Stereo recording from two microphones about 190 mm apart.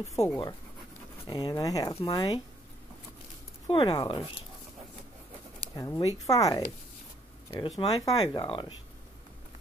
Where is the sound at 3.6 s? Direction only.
25° left (ahead or behind).